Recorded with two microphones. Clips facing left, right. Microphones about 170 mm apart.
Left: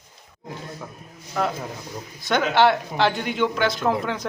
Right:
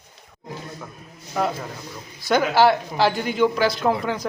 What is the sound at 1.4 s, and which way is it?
Speech, 5° right (ahead or behind).